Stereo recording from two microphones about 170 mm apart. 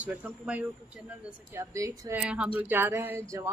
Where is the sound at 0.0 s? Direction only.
10° right (ahead or behind).